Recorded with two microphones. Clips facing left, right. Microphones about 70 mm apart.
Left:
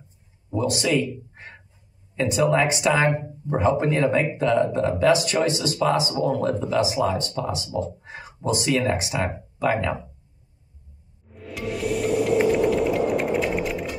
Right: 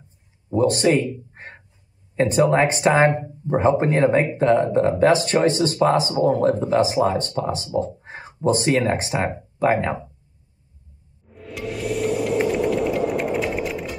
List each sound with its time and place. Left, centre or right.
0.6 s speech: right
11.2 s music: centre